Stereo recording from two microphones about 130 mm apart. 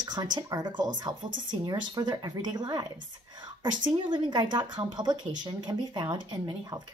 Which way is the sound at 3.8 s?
35° right (ahead or behind).